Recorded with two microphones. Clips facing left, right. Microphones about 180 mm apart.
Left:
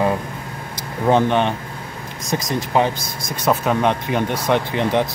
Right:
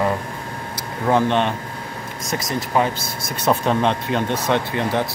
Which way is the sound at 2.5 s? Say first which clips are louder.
Left 1 dB; 15° left (ahead or behind).